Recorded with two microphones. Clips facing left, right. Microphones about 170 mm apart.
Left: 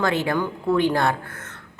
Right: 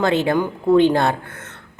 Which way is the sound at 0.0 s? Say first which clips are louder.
Right 4 dB; 25° right (ahead or behind).